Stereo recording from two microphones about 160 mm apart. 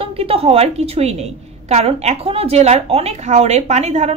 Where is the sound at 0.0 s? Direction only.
35° right (ahead or behind).